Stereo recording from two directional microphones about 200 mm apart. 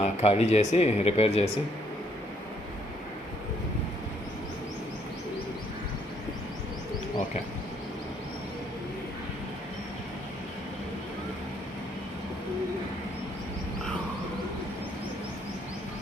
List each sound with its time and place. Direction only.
0.0 s speech: 30° left (ahead or behind)